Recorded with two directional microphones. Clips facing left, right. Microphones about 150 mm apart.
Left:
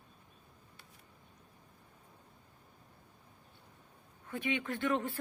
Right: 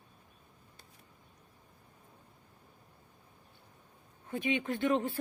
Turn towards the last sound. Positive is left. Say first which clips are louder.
# right 3 dB
turn(degrees=-20)  # may be behind; listen again after turning